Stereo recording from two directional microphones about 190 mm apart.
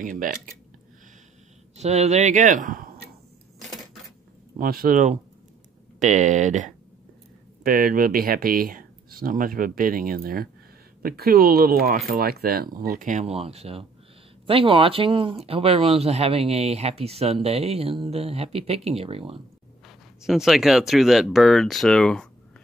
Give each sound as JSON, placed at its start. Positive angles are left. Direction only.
{"t": 0.0, "sound": "speech", "side_deg": -45}
{"t": 1.8, "sound": "speech", "side_deg": -35}
{"t": 4.6, "sound": "speech", "side_deg": -50}
{"t": 20.2, "sound": "speech", "side_deg": 0}